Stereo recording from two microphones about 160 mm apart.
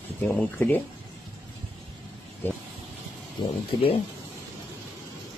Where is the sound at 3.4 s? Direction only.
25° left (ahead or behind).